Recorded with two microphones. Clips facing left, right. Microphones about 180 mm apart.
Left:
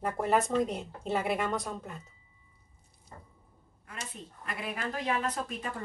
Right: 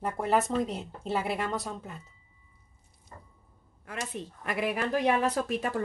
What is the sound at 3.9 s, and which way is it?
Speech, 75° right (ahead or behind).